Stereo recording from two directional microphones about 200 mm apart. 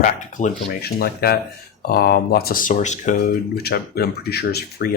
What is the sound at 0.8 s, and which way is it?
Speech, 50° left (ahead or behind).